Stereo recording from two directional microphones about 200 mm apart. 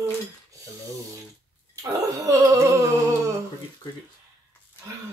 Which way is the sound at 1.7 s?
15° right (ahead or behind).